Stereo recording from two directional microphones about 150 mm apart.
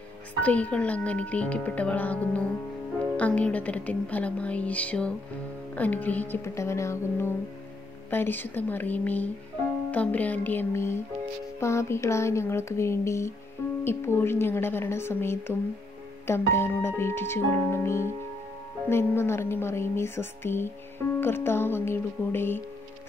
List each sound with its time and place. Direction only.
0.4 s speech: 10° left (ahead or behind)